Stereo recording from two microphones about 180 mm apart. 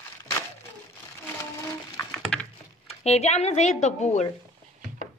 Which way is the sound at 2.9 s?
35° left (ahead or behind).